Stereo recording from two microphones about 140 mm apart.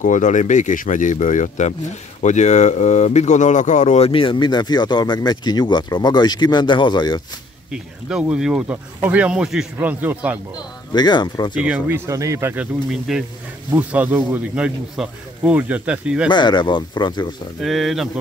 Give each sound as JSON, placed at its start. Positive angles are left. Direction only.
{"t": 0.0, "sound": "speech", "side_deg": 65}
{"t": 4.1, "sound": "speech", "side_deg": 35}
{"t": 7.7, "sound": "speech", "side_deg": -5}
{"t": 10.5, "sound": "speech", "side_deg": 30}
{"t": 11.6, "sound": "speech", "side_deg": -10}
{"t": 12.1, "sound": "speech", "side_deg": -20}
{"t": 12.9, "sound": "speech", "side_deg": 0}
{"t": 13.7, "sound": "speech", "side_deg": -10}
{"t": 16.3, "sound": "speech", "side_deg": 30}
{"t": 17.6, "sound": "speech", "side_deg": 0}